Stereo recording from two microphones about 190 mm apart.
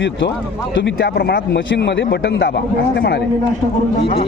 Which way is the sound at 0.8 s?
65° left (ahead or behind).